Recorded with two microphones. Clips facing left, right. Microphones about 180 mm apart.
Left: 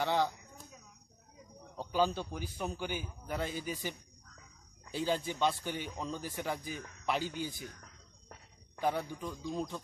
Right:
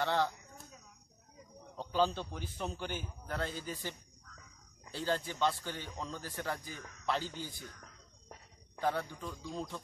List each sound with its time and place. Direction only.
0.0 s a man's voice: 10° left (ahead or behind)
1.8 s a man's voice: 10° left (ahead or behind)
4.9 s a man's voice: 15° left (ahead or behind)
8.7 s a man's voice: 15° left (ahead or behind)